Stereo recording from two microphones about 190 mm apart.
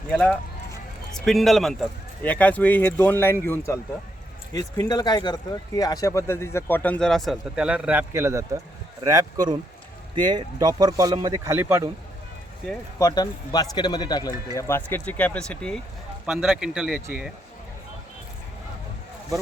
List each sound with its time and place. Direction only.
0.1 s speech: 10° left (ahead or behind); by 11.9 s 10° right (ahead or behind)
13.0 s speech: 20° left (ahead or behind); by 17.3 s 5° right (ahead or behind)